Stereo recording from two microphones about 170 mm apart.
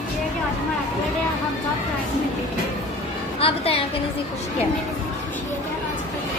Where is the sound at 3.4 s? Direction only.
35° left (ahead or behind).